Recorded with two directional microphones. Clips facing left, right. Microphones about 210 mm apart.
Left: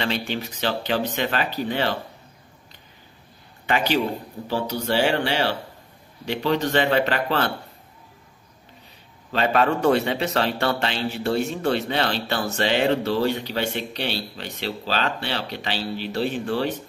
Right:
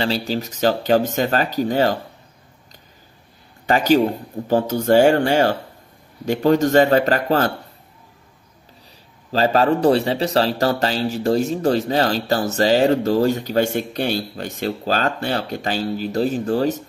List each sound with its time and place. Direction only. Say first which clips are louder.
0.0 s a man's voice: right 4 dB; 35° right (ahead or behind)
3.6 s a man's voice: right 7 dB; 40° right (ahead or behind)
9.3 s a man's voice: right 4 dB; 35° right (ahead or behind)